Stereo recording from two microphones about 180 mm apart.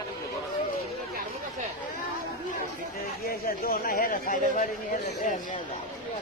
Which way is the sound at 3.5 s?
55° left (ahead or behind).